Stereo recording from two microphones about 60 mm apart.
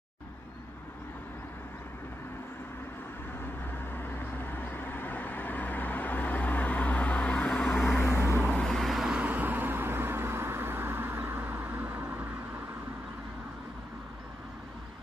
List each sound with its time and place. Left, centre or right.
3.9 s vehicle: left; by 7.7 s centre
8.0 s vehicle: left
8.5 s vehicle: centre
8.7 s vehicle: centre
9.1 s vehicle: right